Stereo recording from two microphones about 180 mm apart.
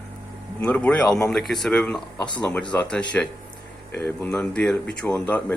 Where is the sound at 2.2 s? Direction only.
25° left (ahead or behind).